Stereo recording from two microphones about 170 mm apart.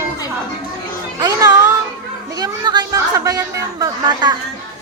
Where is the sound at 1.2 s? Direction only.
20° right (ahead or behind).